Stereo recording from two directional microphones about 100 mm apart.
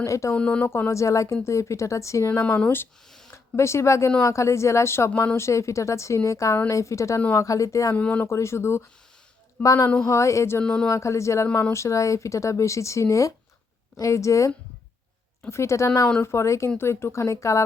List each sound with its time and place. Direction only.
0.0 s speech: 30° left (ahead or behind)
0.3 s speech: 10° left (ahead or behind)
0.7 s speech: 25° left (ahead or behind)
2.4 s a woman's voice: 15° left (ahead or behind); by 7.9 s 35° left (ahead or behind)
7.9 s speech: 15° left (ahead or behind)
8.2 s a woman's voice: 30° left (ahead or behind)
10.6 s speech: 10° left (ahead or behind)
10.8 s a woman's voice: 30° left (ahead or behind)